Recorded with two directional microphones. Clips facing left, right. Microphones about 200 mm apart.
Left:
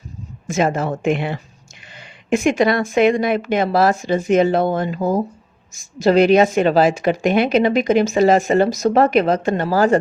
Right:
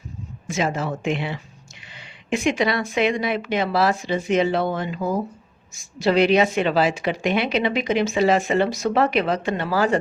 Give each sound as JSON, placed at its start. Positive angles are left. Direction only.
{"t": 0.4, "sound": "a woman's voice", "side_deg": 50}